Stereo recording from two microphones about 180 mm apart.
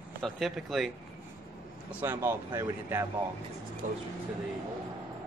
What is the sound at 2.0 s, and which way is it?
Speech, 15° right (ahead or behind).